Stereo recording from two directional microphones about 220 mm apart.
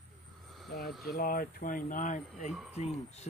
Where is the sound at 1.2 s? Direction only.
40° left (ahead or behind).